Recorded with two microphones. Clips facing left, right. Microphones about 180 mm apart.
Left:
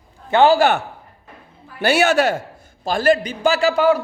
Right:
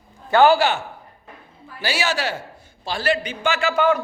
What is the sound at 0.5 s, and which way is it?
Speech, 55° left (ahead or behind).